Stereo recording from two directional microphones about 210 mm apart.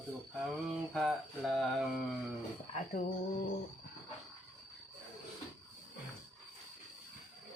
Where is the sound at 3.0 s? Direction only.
35° left (ahead or behind).